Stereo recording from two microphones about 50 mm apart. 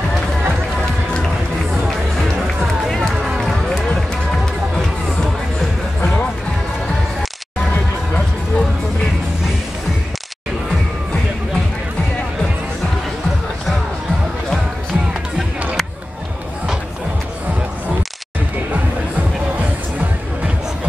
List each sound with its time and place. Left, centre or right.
3.3 s run: centre
8.1 s music: centre
19.6 s music: right